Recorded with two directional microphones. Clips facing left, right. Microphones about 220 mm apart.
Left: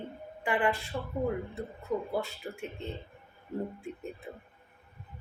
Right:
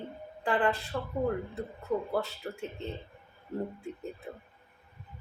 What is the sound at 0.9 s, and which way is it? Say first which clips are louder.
Speech: right 1 dB; 20° left (ahead or behind).